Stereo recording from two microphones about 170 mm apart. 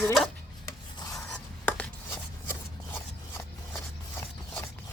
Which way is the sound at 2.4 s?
15° left (ahead or behind).